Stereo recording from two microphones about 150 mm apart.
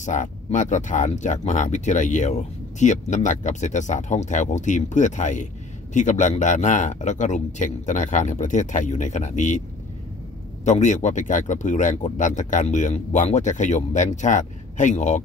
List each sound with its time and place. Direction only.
0.0 s speech: 55° left (ahead or behind)
10.6 s speech: 50° left (ahead or behind)